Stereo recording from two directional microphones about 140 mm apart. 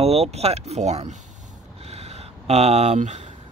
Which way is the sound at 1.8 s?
50° right (ahead or behind).